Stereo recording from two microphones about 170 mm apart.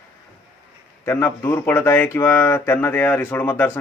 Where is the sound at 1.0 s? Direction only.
15° left (ahead or behind).